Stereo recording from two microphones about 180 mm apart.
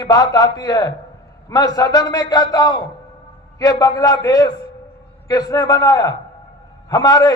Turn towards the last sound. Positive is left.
turn(degrees=20)  # may be behind; listen again after turning